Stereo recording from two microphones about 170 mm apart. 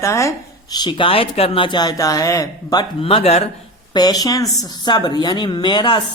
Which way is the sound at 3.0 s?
35° left (ahead or behind).